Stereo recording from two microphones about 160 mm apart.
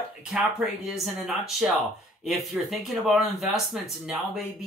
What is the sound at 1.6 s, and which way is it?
Speech, 5° right (ahead or behind).